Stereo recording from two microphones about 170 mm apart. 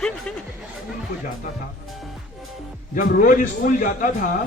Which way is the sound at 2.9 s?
55° left (ahead or behind).